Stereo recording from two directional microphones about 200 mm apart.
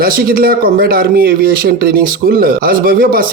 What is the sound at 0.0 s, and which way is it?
Speech, 50° right (ahead or behind).